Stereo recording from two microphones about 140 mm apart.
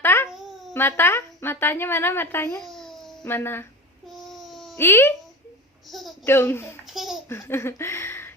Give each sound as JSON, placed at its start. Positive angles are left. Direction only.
{"t": 0.0, "sound": "babbling", "side_deg": 15}
{"t": 0.3, "sound": "babbling", "side_deg": 0}
{"t": 0.7, "sound": "a woman's voice", "side_deg": 15}
{"t": 2.6, "sound": "babbling", "side_deg": 0}
{"t": 3.2, "sound": "a woman's voice", "side_deg": 15}
{"t": 4.1, "sound": "a sound", "side_deg": 0}
{"t": 4.8, "sound": "a woman's voice", "side_deg": 15}
{"t": 5.9, "sound": "a child's voice", "side_deg": 0}
{"t": 6.2, "sound": "a woman's voice", "side_deg": 15}
{"t": 6.9, "sound": "a sound", "side_deg": 0}
{"t": 7.3, "sound": "a woman's voice", "side_deg": 20}